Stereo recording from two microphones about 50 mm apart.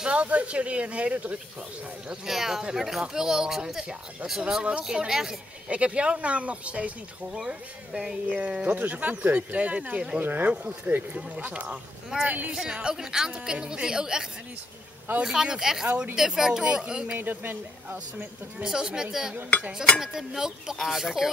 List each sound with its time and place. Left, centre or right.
0.0 s speech: right
2.0 s speech: centre
5.7 s speech: right
8.7 s speech: right
11.1 s speech: right
12.5 s speech: centre
15.2 s speech: centre
17.2 s speech: right
18.6 s speech: centre